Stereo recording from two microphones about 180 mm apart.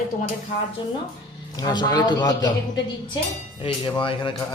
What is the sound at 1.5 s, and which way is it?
Speech, 20° left (ahead or behind).